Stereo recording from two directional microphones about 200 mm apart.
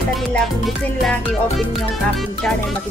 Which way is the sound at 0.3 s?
Centre (ahead or behind).